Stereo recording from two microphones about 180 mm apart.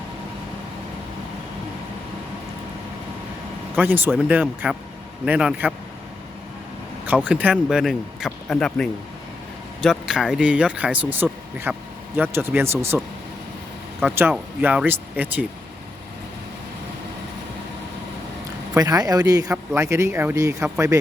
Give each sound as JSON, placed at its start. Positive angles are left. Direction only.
{"t": 3.8, "sound": "speech", "side_deg": -10}
{"t": 7.3, "sound": "speech", "side_deg": -10}
{"t": 14.0, "sound": "speech", "side_deg": -10}
{"t": 18.7, "sound": "speech", "side_deg": -20}